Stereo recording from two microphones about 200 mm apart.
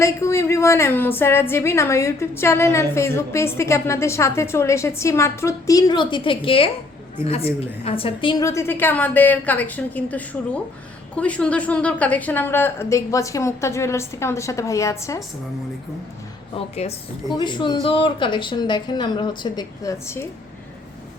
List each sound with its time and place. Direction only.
0.0 s a woman's voice: 15° left (ahead or behind)
16.6 s a woman's voice: 30° left (ahead or behind); by 20.2 s 15° left (ahead or behind)